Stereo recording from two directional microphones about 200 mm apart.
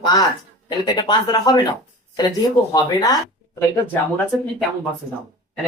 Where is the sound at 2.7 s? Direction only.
20° left (ahead or behind).